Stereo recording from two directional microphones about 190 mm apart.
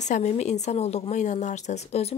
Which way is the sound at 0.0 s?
35° left (ahead or behind).